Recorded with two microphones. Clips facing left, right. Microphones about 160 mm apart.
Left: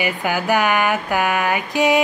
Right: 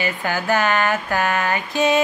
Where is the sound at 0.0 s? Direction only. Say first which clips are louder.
Left 2 dB; 15° left (ahead or behind).